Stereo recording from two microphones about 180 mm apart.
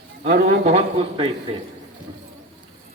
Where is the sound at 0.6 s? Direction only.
30° right (ahead or behind).